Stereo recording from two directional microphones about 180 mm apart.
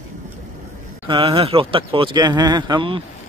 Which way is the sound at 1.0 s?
30° right (ahead or behind).